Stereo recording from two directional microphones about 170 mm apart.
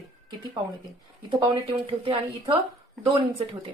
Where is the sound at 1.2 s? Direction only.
25° right (ahead or behind).